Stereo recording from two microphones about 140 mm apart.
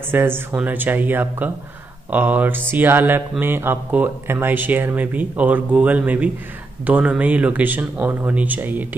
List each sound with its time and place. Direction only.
0.1 s speech: 15° right (ahead or behind)